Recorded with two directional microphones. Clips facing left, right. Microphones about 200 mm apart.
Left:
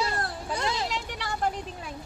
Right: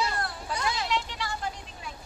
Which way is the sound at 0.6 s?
35° left (ahead or behind).